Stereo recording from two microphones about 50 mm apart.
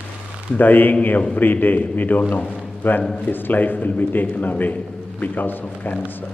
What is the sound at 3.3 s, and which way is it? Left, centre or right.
A man's voice, left.